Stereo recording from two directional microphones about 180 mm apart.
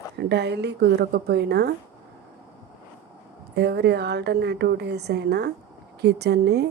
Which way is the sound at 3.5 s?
65° right (ahead or behind).